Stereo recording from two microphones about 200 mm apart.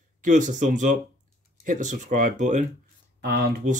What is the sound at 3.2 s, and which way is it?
Speech, 50° right (ahead or behind).